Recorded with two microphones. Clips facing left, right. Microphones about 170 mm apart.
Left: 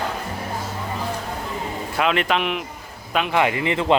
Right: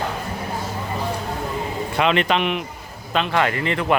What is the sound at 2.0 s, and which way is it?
A man's voice, 5° left (ahead or behind).